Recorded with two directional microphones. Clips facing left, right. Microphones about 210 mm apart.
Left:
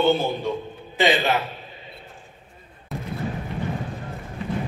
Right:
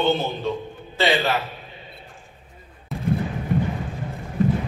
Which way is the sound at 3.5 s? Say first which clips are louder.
Right 4 dB; 50° right (ahead or behind).